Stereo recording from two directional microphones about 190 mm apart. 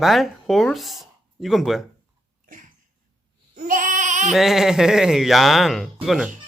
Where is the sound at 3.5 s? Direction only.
45° right (ahead or behind).